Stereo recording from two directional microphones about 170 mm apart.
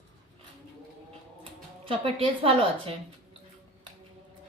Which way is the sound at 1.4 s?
30° right (ahead or behind).